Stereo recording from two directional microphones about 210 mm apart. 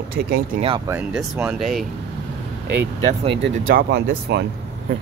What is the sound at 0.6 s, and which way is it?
Speech, 25° right (ahead or behind).